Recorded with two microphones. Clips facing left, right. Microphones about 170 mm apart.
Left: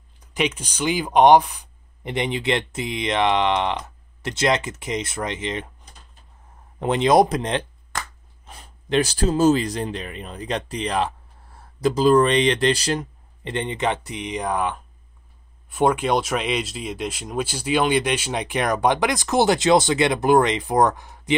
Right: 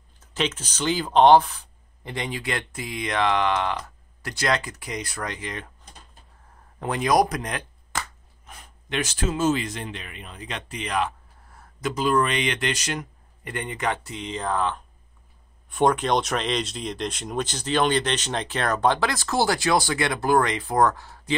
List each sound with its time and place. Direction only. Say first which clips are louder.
0.2 s speech: left 3 dB; 15° left (ahead or behind)
6.8 s speech: left 5 dB; 25° left (ahead or behind)